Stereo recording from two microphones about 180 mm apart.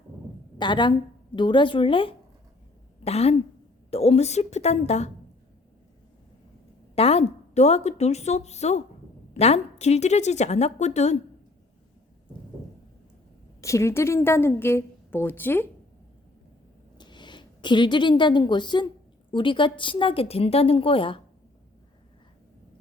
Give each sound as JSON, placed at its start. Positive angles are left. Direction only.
{"t": 0.6, "sound": "a woman's voice", "side_deg": 25}
{"t": 6.9, "sound": "a woman's voice", "side_deg": 35}
{"t": 13.6, "sound": "a woman's voice", "side_deg": 15}
{"t": 17.0, "sound": "a woman's voice", "side_deg": 25}